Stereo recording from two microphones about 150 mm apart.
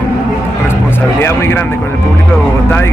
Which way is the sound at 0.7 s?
15° left (ahead or behind).